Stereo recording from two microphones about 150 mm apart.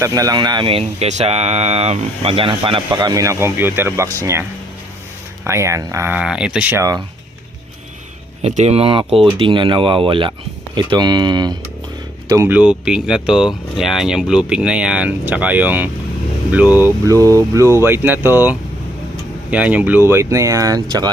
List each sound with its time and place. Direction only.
0.0 s speech: 25° right (ahead or behind)
5.5 s speech: 20° right (ahead or behind)
8.4 s speech: 45° right (ahead or behind); by 11.5 s 25° right (ahead or behind)
12.3 s speech: 15° right (ahead or behind)